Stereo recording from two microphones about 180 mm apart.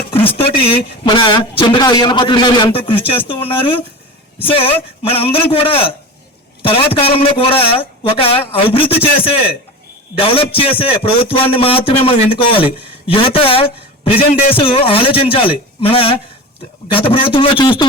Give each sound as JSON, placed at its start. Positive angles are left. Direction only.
{"t": 0.3, "sound": "a man's voice", "side_deg": 30}